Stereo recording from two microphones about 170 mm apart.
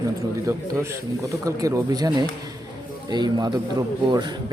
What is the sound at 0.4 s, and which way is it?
Speech, 15° right (ahead or behind).